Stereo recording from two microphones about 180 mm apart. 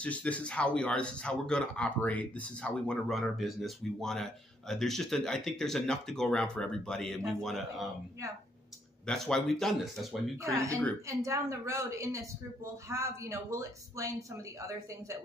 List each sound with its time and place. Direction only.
0.0 s speech: 5° left (ahead or behind)
9.0 s speech: 5° left (ahead or behind)
10.4 s speech: 15° right (ahead or behind)